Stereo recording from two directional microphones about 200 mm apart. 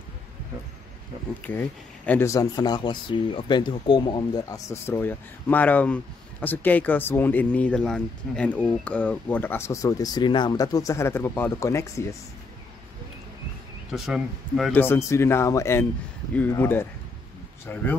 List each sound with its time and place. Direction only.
1.4 s speech: 10° left (ahead or behind)
13.9 s speech: centre (ahead or behind)
14.7 s speech: 10° left (ahead or behind)